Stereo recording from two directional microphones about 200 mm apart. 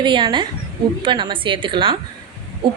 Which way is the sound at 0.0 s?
25° right (ahead or behind).